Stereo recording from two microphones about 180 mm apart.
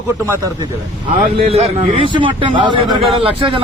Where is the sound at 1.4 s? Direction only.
35° right (ahead or behind).